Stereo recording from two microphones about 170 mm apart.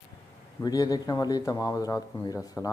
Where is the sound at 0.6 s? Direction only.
20° left (ahead or behind).